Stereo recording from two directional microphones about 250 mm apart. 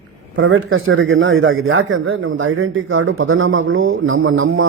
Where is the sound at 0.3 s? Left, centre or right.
Right.